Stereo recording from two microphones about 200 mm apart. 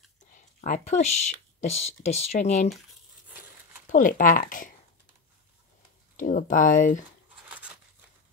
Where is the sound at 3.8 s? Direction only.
40° left (ahead or behind).